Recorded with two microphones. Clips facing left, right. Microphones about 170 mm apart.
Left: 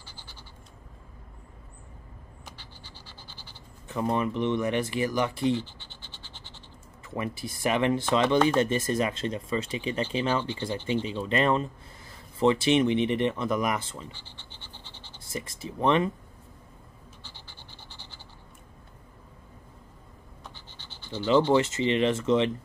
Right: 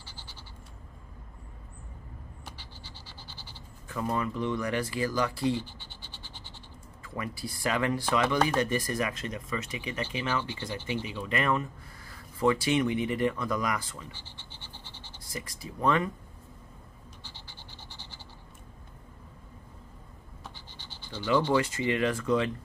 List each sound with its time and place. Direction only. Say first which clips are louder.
3.9 s speech: left 4 dB; 25° left (ahead or behind)
5.6 s scratch: left 2 dB; 15° right (ahead or behind)
7.0 s speech: left 4 dB; 20° left (ahead or behind)
10.8 s speech: left 5 dB; 10° right (ahead or behind)
11.1 s speech: left 3 dB; 25° left (ahead or behind)
15.2 s speech: left 4 dB; 25° left (ahead or behind)
20.4 s scratch: right 1 dB; 10° right (ahead or behind)
21.3 s speech: left 4 dB; 20° left (ahead or behind)